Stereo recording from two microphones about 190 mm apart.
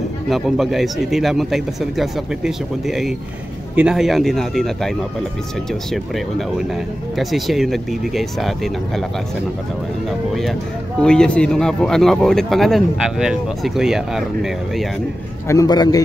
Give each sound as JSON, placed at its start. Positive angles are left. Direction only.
{"t": 0.3, "sound": "speech", "side_deg": 0}
{"t": 11.0, "sound": "speech", "side_deg": 5}
{"t": 15.4, "sound": "a man's voice", "side_deg": 20}